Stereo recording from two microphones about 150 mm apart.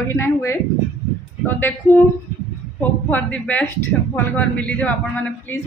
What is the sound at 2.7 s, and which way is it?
A woman's voice, 10° left (ahead or behind).